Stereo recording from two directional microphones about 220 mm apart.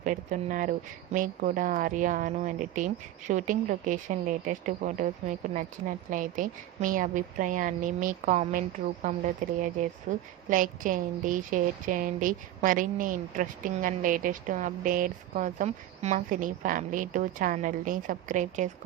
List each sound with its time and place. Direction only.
0.0 s a woman's voice: 35° right (ahead or behind)